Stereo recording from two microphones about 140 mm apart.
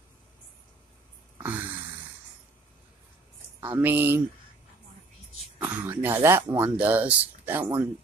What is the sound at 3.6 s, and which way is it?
Speech, 15° right (ahead or behind).